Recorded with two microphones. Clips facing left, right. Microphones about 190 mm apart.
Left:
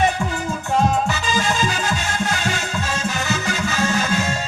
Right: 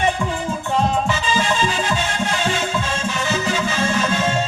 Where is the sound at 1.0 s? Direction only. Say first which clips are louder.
Right 1 dB; 40° left (ahead or behind).